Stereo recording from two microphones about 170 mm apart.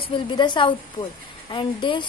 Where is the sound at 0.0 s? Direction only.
30° left (ahead or behind).